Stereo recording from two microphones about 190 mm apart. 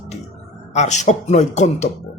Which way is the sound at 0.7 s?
40° left (ahead or behind).